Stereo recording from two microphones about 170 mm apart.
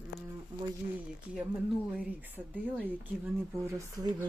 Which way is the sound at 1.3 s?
5° right (ahead or behind).